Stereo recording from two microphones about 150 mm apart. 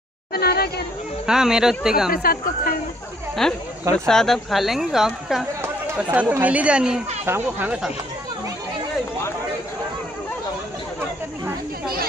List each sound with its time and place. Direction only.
0.3 s a sound: 90° left
1.2 s a woman's voice: 5° right (ahead or behind)
2.0 s speech: 75° left (ahead or behind)
3.4 s a woman's voice: 5° left (ahead or behind)
6.1 s speech: 15° right (ahead or behind)